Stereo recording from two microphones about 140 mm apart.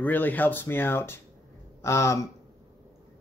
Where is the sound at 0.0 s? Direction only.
10° left (ahead or behind).